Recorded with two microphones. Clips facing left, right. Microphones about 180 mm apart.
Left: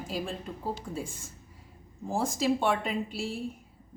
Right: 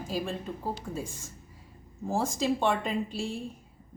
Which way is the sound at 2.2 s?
Centre (ahead or behind).